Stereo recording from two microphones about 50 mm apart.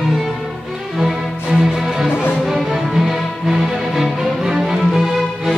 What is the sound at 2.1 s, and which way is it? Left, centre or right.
Music, left.